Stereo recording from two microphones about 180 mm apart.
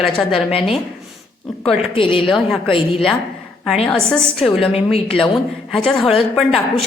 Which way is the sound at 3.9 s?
5° left (ahead or behind).